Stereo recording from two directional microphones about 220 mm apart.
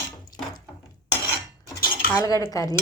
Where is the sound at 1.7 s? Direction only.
15° left (ahead or behind).